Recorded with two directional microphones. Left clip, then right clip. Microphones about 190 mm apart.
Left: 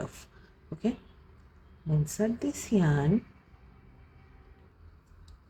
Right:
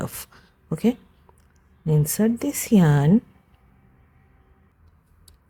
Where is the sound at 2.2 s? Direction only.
60° right (ahead or behind).